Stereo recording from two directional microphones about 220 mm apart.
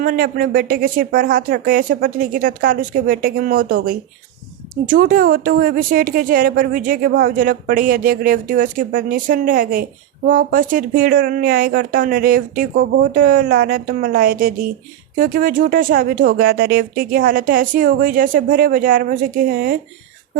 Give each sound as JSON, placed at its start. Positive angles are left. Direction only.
{"t": 0.0, "sound": "a woman's voice", "side_deg": -40}